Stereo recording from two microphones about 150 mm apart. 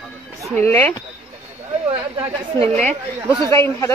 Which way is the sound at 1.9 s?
45° right (ahead or behind).